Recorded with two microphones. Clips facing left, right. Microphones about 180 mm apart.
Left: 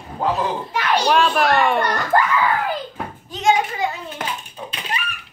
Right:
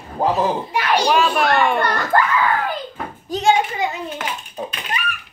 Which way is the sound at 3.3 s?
35° right (ahead or behind).